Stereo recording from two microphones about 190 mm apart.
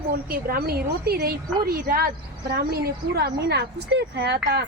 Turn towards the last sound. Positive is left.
turn(degrees=-60)  # may be behind; listen again after turning